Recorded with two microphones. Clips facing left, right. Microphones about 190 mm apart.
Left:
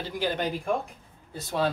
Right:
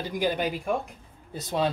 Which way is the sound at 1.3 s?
20° right (ahead or behind).